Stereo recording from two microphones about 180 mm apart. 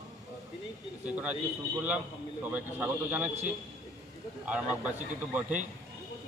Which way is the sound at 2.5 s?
10° right (ahead or behind).